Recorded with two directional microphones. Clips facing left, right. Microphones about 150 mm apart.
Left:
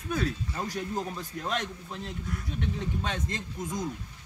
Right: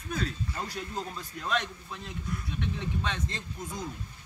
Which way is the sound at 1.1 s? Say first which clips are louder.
Even; 45° left (ahead or behind).